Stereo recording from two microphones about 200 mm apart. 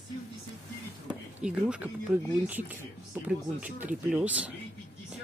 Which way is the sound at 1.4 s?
5° right (ahead or behind).